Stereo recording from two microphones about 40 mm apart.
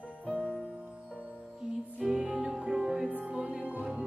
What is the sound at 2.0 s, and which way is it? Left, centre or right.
Music, centre.